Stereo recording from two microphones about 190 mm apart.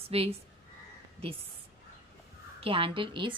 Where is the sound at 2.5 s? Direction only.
30° right (ahead or behind).